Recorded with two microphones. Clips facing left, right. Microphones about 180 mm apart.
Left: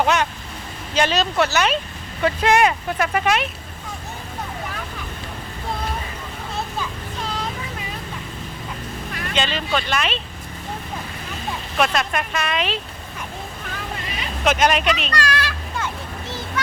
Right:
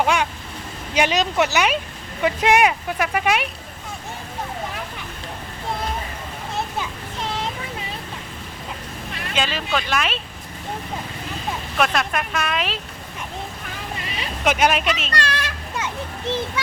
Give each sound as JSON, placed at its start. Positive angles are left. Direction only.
{"t": 0.0, "sound": "speech", "side_deg": -10}
{"t": 7.3, "sound": "vehicle", "side_deg": -25}
{"t": 9.3, "sound": "speech", "side_deg": -5}
{"t": 11.8, "sound": "speech", "side_deg": 0}
{"t": 14.4, "sound": "speech", "side_deg": -10}
{"t": 15.1, "sound": "children playing", "side_deg": -25}